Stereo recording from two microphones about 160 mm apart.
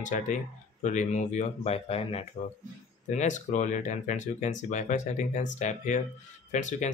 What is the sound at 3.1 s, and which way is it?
Speech, 50° left (ahead or behind).